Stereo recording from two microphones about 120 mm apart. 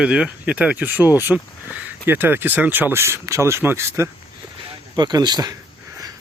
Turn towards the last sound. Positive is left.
turn(degrees=-35)  # may be behind; listen again after turning